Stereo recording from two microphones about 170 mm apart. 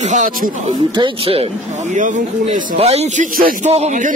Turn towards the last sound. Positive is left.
turn(degrees=-45)  # may be behind; listen again after turning